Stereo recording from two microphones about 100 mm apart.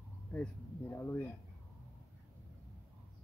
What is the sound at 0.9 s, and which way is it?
Speech, 20° left (ahead or behind).